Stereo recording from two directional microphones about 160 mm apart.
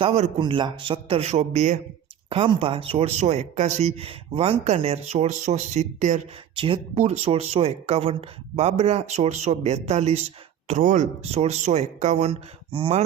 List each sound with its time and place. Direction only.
0.0 s speech: 40° right (ahead or behind)
0.3 s speech: 30° right (ahead or behind)
2.3 s speech: 35° right (ahead or behind)
10.7 s speech: 55° right (ahead or behind); by 13.0 s 35° right (ahead or behind)